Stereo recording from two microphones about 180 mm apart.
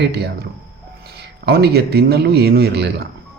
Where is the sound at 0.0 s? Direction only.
65° right (ahead or behind).